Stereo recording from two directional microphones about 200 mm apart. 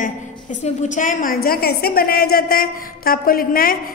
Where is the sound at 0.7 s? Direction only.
40° left (ahead or behind).